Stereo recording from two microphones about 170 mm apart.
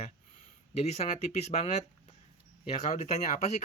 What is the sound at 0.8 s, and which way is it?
Speech, 40° left (ahead or behind).